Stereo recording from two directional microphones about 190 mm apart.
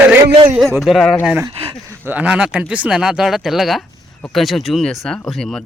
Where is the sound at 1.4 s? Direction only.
30° right (ahead or behind).